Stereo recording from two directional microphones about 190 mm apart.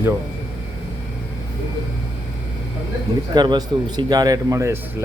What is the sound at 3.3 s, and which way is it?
Speech, 20° right (ahead or behind).